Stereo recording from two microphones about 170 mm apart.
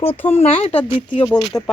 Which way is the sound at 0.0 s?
15° left (ahead or behind).